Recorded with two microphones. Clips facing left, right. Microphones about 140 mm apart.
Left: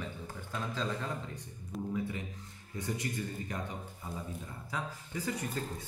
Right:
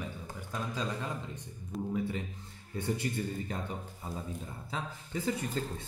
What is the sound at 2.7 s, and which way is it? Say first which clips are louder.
Speech: right 3 dB; 30° right (ahead or behind).